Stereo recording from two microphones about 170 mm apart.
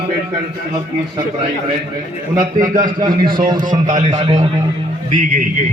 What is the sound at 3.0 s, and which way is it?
Speech, 25° right (ahead or behind).